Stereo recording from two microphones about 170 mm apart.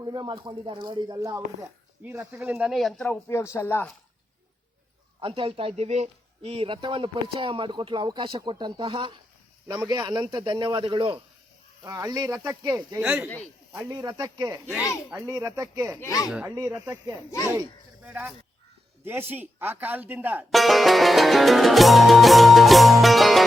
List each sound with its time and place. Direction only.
0.0 s speech: 20° right (ahead or behind); by 3.1 s centre (ahead or behind)
3.1 s speech: 15° left (ahead or behind)
5.2 s speech: 35° right (ahead or behind)
13.0 s speech: 5° right (ahead or behind)
13.2 s speech: 10° left (ahead or behind)
13.9 s speech: 25° right (ahead or behind)
16.0 s speech: 20° left (ahead or behind)
16.3 s speech: 10° right (ahead or behind)
20.5 s music: centre (ahead or behind)